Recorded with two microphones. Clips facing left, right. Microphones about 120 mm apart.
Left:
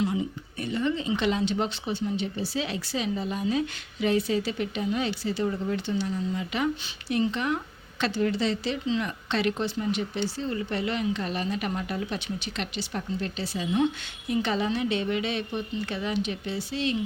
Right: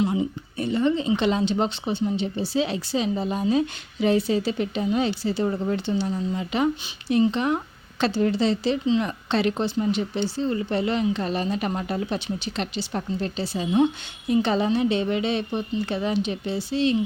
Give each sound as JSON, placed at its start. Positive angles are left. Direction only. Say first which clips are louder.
{"t": 0.6, "sound": "a woman's voice", "louder": "right 5 dB", "side_deg": -30}